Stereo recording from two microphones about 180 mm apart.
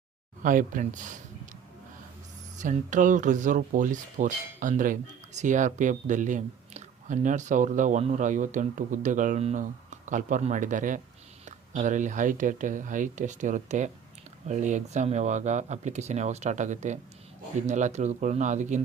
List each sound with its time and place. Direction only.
0.4 s speech: 45° right (ahead or behind)
2.6 s speech: 45° right (ahead or behind)